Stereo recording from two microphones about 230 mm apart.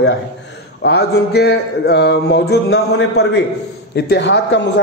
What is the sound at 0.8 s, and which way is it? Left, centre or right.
A man's voice, left.